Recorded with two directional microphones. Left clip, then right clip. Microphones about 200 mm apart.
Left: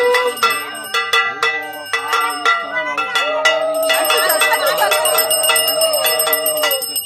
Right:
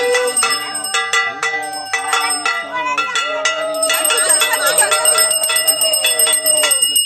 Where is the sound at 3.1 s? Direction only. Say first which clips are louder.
Left 3 dB; 40° left (ahead or behind).